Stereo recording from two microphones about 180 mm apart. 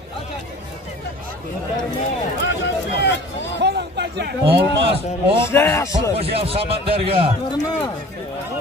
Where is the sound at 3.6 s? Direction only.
70° right (ahead or behind).